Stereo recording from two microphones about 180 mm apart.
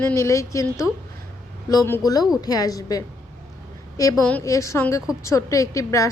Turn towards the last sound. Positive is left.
turn(degrees=20)  # may be behind; listen again after turning